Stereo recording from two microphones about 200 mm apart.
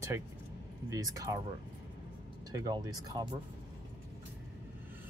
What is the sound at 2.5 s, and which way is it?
Speech, 20° right (ahead or behind).